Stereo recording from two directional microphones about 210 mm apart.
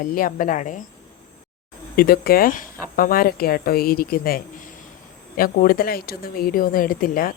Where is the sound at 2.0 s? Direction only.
45° left (ahead or behind).